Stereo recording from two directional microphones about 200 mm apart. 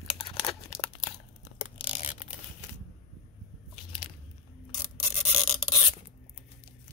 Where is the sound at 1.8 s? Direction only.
25° left (ahead or behind).